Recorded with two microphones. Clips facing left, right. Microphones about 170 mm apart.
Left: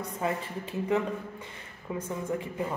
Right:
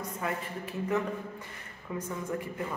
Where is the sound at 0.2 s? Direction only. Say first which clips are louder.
Left 4 dB; 25° left (ahead or behind).